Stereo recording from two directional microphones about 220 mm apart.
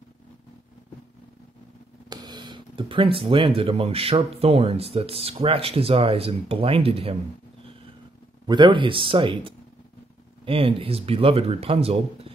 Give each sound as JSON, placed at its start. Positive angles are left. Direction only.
{"t": 2.0, "sound": "speech", "side_deg": -20}
{"t": 8.5, "sound": "speech", "side_deg": -20}